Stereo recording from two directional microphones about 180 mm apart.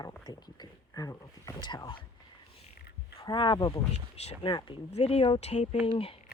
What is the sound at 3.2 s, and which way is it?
Speech, 25° left (ahead or behind).